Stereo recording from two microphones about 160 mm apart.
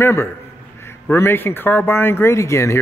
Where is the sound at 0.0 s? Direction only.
15° left (ahead or behind).